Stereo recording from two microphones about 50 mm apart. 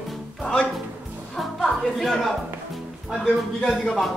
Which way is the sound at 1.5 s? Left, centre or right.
Centre.